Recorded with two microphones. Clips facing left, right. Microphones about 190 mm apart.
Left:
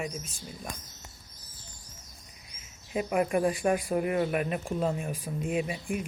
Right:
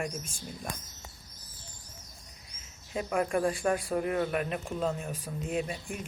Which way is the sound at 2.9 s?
10° left (ahead or behind).